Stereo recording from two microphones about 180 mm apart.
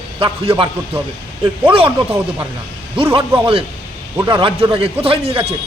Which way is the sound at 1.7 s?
30° right (ahead or behind).